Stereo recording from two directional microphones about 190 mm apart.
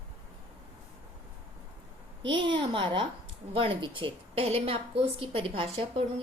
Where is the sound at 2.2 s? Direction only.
25° right (ahead or behind).